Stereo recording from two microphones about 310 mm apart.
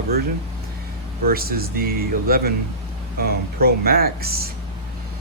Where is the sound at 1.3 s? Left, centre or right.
Right.